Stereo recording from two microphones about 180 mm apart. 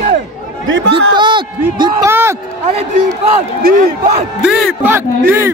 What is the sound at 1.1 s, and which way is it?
Speech, 25° right (ahead or behind).